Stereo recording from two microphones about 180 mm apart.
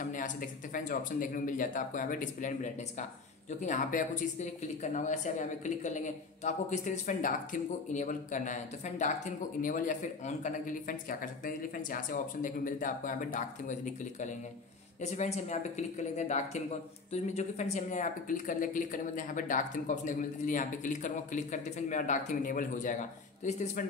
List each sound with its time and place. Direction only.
0.0 s speech: 50° left (ahead or behind)
15.0 s speech: 40° left (ahead or behind)